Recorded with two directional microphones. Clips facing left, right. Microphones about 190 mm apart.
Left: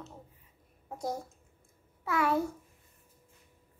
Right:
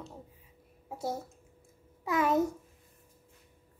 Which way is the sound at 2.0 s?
20° right (ahead or behind).